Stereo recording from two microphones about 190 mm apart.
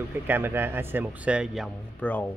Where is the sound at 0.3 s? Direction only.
10° right (ahead or behind); by 2.3 s 10° left (ahead or behind).